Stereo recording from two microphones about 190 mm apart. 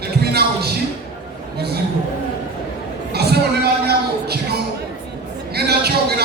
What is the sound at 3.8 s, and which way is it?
Music, 55° right (ahead or behind).